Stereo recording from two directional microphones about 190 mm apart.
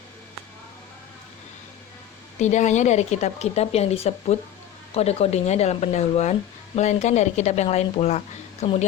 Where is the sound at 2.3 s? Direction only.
40° left (ahead or behind).